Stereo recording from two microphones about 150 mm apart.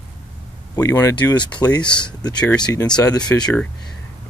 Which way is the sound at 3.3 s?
15° left (ahead or behind).